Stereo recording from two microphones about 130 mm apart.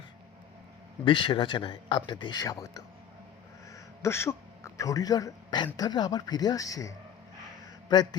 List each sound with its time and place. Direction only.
1.0 s speech: 40° left (ahead or behind)
3.7 s a sound: 20° left (ahead or behind)
5.7 s speech: 30° left (ahead or behind)